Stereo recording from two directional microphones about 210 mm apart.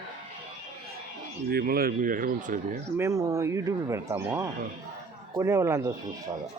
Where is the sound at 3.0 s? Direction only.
15° right (ahead or behind).